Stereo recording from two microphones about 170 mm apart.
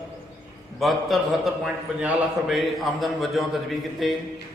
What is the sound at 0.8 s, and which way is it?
A man's voice, centre (ahead or behind).